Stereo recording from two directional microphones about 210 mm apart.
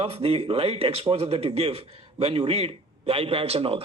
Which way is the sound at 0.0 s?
25° right (ahead or behind).